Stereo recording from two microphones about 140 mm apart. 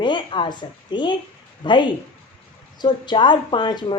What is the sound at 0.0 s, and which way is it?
A woman's voice, 35° left (ahead or behind).